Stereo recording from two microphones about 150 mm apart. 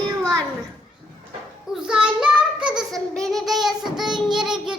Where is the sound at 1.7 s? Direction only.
5° right (ahead or behind).